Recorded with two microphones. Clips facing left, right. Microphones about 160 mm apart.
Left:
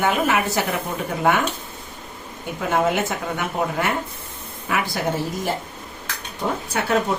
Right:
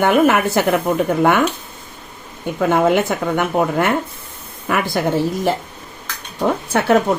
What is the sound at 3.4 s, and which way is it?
A woman's voice, 60° right (ahead or behind).